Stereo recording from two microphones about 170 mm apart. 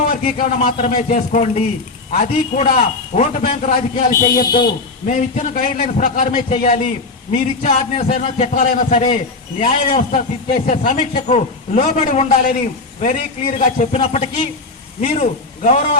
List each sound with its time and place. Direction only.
0.3 s a man's voice: 35° left (ahead or behind)
4.4 s a man's voice: 60° left (ahead or behind)